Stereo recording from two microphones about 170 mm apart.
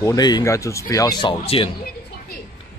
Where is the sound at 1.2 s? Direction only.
30° left (ahead or behind).